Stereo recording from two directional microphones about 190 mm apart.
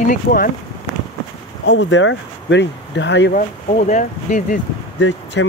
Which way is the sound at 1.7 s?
70° left (ahead or behind).